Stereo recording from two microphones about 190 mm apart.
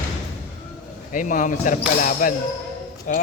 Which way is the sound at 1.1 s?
45° left (ahead or behind).